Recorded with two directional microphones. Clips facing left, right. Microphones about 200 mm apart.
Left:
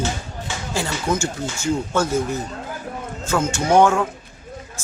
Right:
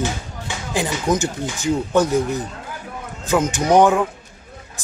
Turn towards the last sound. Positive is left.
turn(degrees=-15)  # may be behind; listen again after turning